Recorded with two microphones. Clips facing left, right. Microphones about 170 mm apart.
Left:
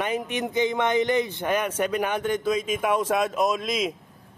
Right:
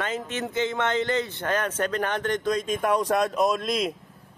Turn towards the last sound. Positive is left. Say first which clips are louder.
# even
turn(degrees=0)  # may be behind; listen again after turning